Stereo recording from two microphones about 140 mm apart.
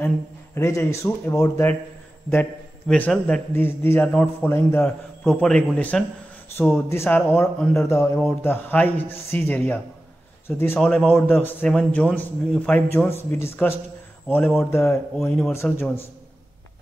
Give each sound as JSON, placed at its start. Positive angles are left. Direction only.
{"t": 0.6, "sound": "speech", "side_deg": 20}
{"t": 2.9, "sound": "a man's voice", "side_deg": 5}
{"t": 5.2, "sound": "a man's voice", "side_deg": 5}
{"t": 15.2, "sound": "a man's voice", "side_deg": 5}
{"t": 15.5, "sound": "a man's voice", "side_deg": 15}